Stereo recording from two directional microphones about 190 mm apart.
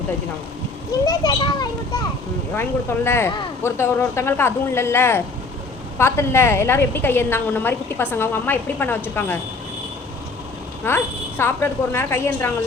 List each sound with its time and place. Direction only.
1.0 s a child's voice: 20° left (ahead or behind)
10.8 s a woman's voice: 10° left (ahead or behind)